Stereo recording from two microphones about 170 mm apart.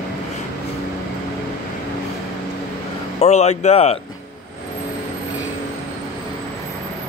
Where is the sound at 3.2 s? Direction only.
40° left (ahead or behind).